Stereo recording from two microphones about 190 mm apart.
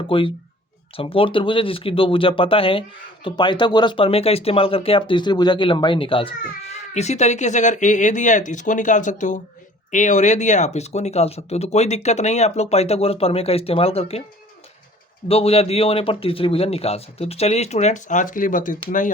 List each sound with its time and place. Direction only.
0.1 s speech: 30° left (ahead or behind)
15.3 s speech: 30° left (ahead or behind)